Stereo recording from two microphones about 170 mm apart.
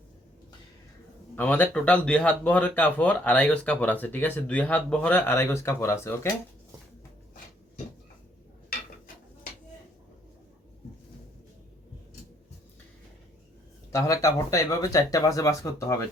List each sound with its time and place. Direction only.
1.4 s speech: 10° left (ahead or behind)
13.9 s speech: 20° left (ahead or behind)